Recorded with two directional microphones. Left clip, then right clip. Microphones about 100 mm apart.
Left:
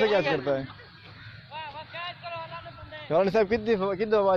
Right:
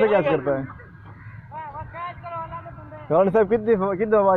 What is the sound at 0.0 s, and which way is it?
Speech, 25° left (ahead or behind).